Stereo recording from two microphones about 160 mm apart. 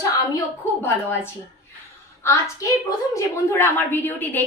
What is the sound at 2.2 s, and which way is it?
A woman's voice, 20° left (ahead or behind).